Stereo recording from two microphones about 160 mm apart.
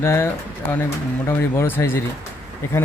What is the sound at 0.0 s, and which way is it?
Speech, 15° left (ahead or behind).